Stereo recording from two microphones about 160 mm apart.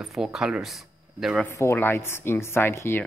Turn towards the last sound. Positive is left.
turn(degrees=15)  # may be behind; listen again after turning